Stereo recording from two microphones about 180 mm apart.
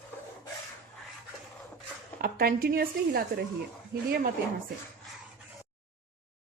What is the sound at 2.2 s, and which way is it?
A woman's voice, 55° right (ahead or behind).